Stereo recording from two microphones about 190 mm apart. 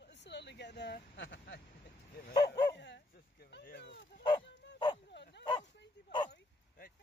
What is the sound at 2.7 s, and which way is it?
Bow-wow, 65° left (ahead or behind).